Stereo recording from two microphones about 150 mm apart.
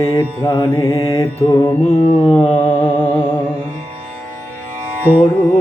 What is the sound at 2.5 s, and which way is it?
Humming, 15° left (ahead or behind).